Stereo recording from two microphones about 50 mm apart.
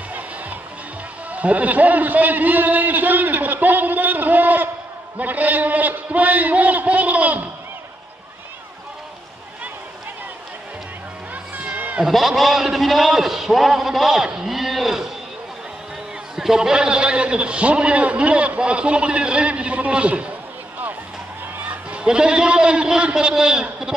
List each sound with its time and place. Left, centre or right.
1.3 s a man's voice: right
12.1 s a man's voice: centre
16.3 s a man's voice: centre
22.0 s a man's voice: centre